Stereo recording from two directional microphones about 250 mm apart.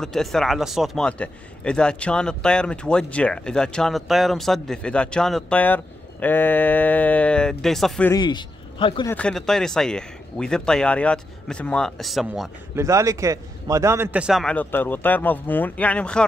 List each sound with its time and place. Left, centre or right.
0.0 s speech: centre
8.1 s a man's voice: centre
9.1 s speech: centre
12.8 s speech: centre